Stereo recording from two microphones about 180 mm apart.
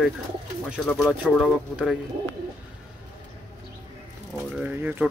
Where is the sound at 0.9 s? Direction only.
Centre (ahead or behind).